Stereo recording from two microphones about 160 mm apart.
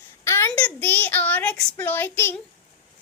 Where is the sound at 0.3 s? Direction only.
15° left (ahead or behind).